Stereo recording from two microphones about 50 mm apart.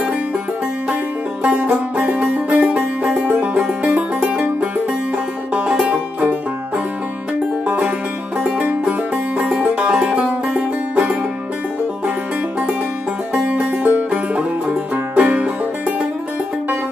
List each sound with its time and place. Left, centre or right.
1.4 s music: right
7.6 s music: right
9.5 s music: centre
13.8 s music: right